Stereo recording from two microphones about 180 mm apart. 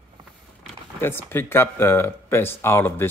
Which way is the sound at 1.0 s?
10° left (ahead or behind).